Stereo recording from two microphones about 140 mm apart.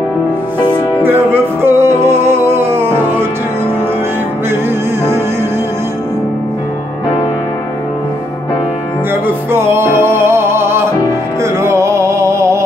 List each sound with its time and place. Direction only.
1.0 s music: 15° right (ahead or behind)
9.1 s music: 15° right (ahead or behind)